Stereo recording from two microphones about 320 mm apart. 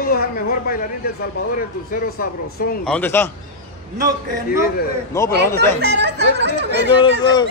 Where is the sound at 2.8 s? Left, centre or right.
Centre.